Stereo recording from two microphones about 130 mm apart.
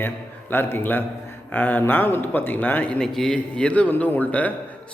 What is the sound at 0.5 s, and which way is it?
A man's voice, 15° left (ahead or behind).